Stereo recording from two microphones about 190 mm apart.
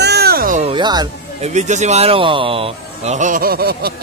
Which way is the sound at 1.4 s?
35° right (ahead or behind).